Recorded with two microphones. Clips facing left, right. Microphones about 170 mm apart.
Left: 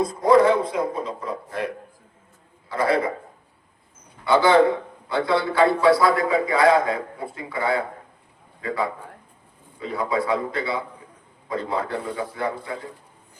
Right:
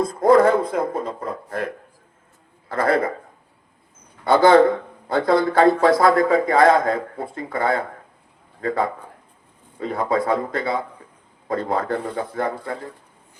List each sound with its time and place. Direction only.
0.0 s a man's voice: 50° right (ahead or behind)
4.2 s a man's voice: 45° right (ahead or behind)